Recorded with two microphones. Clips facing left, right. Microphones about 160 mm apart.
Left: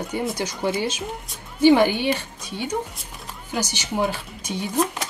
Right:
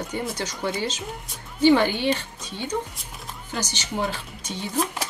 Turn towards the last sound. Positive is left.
turn(degrees=10)  # may be behind; listen again after turning